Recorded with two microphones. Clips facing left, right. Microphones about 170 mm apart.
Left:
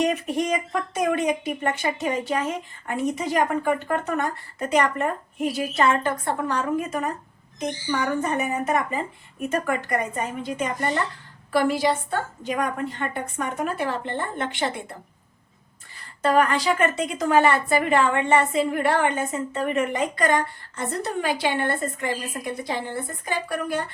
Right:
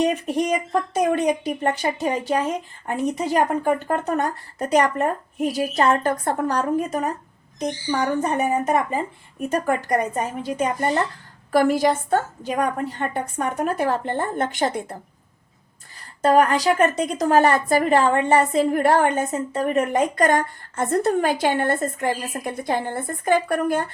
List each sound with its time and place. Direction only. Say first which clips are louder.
0.0 s a woman's voice: right 2 dB; 30° right (ahead or behind)
10.2 s a woman's voice: right 3 dB; 40° right (ahead or behind)
16.2 s a woman's voice: right 3 dB; 40° right (ahead or behind)